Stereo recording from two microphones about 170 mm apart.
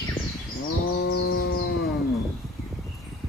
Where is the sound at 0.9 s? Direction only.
90° left.